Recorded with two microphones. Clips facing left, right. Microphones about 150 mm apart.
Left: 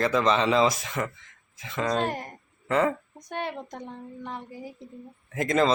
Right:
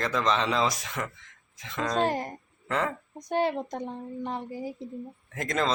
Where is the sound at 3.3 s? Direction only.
30° right (ahead or behind).